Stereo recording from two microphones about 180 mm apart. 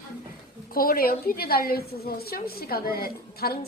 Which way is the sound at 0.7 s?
55° left (ahead or behind).